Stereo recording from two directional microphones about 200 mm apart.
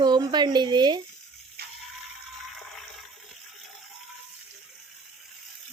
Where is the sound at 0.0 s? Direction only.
20° right (ahead or behind).